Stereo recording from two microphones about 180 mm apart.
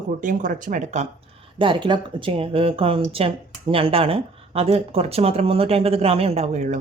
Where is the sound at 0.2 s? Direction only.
45° right (ahead or behind).